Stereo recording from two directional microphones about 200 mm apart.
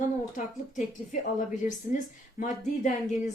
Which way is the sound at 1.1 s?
40° left (ahead or behind).